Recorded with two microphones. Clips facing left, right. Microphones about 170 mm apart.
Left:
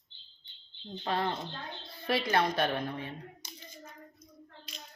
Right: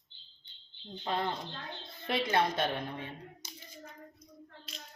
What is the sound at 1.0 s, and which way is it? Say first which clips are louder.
A woman's voice: left 2 dB; 20° right (ahead or behind).